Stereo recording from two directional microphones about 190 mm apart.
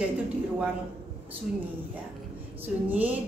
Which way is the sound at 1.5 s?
5° right (ahead or behind).